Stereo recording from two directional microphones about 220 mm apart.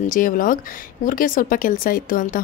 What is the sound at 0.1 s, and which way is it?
A woman's voice, 40° left (ahead or behind).